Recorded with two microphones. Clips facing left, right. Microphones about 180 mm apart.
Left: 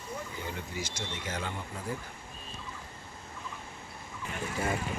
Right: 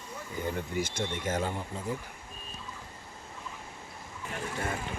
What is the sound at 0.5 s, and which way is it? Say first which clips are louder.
Speech: right 6 dB; 55° right (ahead or behind).